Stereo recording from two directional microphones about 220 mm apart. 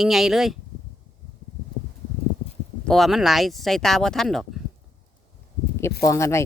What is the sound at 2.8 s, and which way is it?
Speech, centre (ahead or behind).